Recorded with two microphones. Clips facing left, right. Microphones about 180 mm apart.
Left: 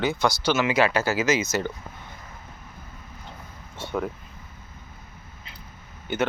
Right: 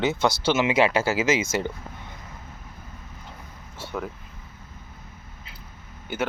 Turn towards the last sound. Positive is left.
turn(degrees=-5)  # may be behind; listen again after turning